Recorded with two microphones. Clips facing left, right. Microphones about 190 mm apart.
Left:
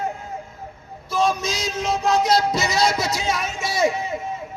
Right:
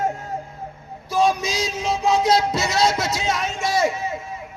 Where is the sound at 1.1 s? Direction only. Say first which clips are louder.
Right 2 dB; 15° right (ahead or behind).